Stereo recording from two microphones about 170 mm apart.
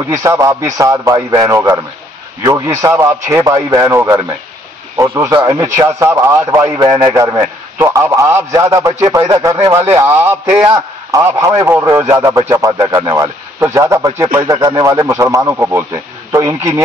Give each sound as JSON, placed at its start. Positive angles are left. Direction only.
{"t": 0.1, "sound": "a man's voice", "side_deg": -15}